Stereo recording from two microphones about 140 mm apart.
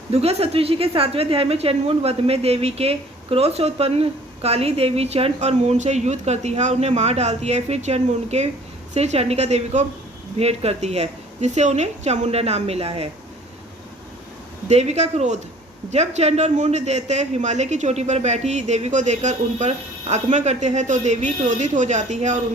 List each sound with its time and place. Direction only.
0.1 s a woman's voice: 45° right (ahead or behind)
14.7 s a woman's voice: 50° right (ahead or behind)